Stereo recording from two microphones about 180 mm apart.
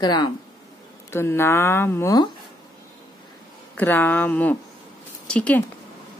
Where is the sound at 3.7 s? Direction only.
10° left (ahead or behind).